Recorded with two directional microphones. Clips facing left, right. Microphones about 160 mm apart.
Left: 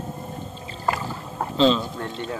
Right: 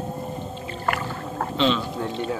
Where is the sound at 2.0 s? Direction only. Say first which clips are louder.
Right 3 dB; 5° right (ahead or behind).